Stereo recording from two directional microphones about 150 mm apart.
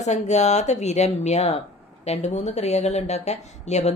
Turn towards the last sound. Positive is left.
turn(degrees=50)  # may be behind; listen again after turning